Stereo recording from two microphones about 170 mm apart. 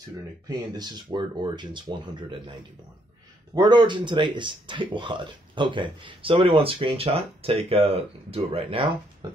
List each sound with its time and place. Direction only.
0.5 s speech: 25° right (ahead or behind)